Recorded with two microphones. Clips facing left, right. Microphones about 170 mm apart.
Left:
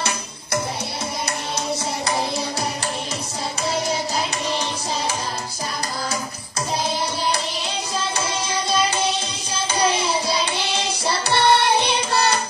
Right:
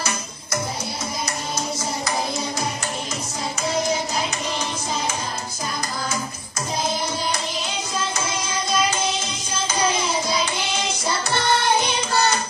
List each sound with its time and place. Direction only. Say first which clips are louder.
9.8 s music: left 2 dB; 30° left (ahead or behind)